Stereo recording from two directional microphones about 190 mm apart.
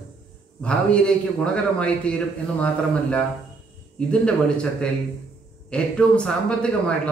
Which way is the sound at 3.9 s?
5° left (ahead or behind).